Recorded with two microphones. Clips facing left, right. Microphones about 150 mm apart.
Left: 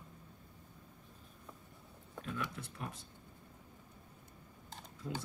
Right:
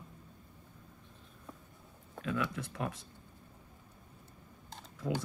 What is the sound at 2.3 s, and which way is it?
Speech, 90° right.